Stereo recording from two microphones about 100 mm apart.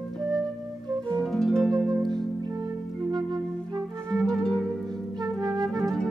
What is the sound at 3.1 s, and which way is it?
Music, 45° right (ahead or behind).